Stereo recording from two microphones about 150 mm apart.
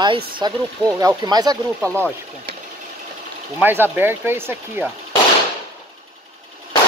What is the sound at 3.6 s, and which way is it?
Speech, 15° right (ahead or behind).